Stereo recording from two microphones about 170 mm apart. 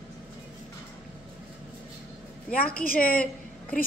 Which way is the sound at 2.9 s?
55° left (ahead or behind).